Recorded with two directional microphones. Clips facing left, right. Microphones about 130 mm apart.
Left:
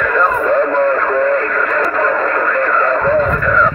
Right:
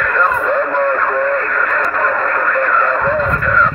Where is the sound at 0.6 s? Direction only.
25° left (ahead or behind).